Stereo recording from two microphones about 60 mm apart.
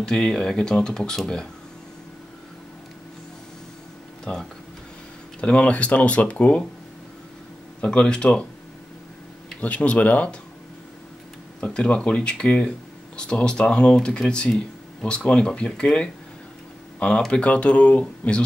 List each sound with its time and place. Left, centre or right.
0.0 s speech: centre
4.2 s speech: centre
7.8 s speech: centre
9.6 s speech: left
11.6 s speech: centre
17.3 s speech: centre